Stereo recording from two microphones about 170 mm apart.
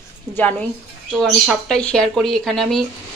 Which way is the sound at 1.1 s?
5° left (ahead or behind).